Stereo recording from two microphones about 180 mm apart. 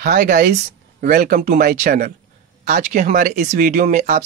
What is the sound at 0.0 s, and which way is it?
Speech, 45° right (ahead or behind).